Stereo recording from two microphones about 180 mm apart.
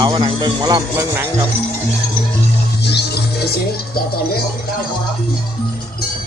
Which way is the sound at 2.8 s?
70° left (ahead or behind).